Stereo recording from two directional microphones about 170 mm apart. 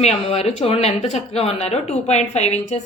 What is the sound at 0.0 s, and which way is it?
Speech, 40° left (ahead or behind).